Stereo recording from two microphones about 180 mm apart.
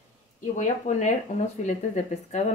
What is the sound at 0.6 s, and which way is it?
Speech, 40° left (ahead or behind).